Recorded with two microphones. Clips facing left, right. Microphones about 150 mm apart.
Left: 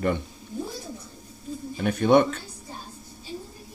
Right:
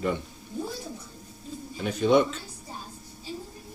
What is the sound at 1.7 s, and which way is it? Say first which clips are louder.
Bird: left 3 dB; 60° left (ahead or behind).